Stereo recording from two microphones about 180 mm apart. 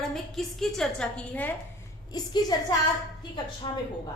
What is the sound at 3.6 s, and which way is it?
Speech, 30° left (ahead or behind).